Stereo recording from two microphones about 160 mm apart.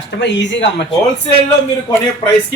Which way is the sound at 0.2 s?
90° left.